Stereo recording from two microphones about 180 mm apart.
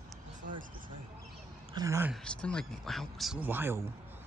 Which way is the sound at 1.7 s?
15° right (ahead or behind).